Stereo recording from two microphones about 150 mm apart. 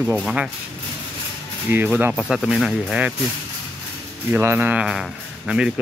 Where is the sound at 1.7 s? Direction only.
15° right (ahead or behind).